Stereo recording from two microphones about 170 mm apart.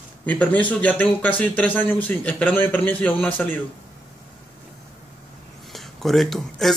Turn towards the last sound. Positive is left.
turn(degrees=0)  # may be behind; listen again after turning